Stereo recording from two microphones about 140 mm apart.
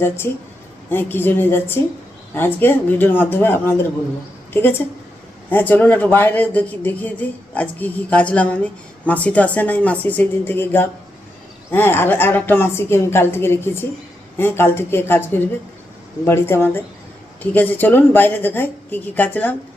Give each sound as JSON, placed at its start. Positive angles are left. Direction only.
{"t": 0.9, "sound": "speech", "side_deg": 15}